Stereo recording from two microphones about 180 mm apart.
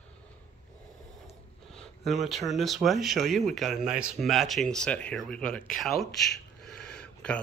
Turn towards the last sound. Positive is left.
turn(degrees=5)  # may be behind; listen again after turning